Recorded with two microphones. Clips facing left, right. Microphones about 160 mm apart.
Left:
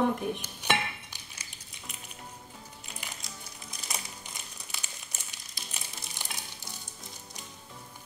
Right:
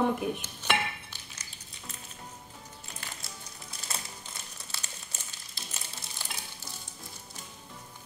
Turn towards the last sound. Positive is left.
turn(degrees=15)  # may be behind; listen again after turning